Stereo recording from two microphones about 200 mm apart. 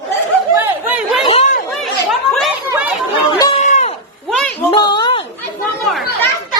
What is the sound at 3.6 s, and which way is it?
Goat, 35° left (ahead or behind).